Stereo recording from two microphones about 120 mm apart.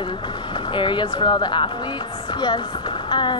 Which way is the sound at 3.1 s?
40° left (ahead or behind).